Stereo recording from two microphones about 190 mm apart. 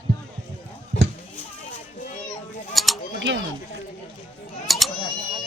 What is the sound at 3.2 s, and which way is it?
Speech, 70° right (ahead or behind).